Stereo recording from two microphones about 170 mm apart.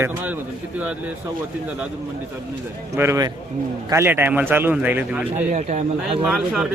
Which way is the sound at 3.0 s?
20° right (ahead or behind).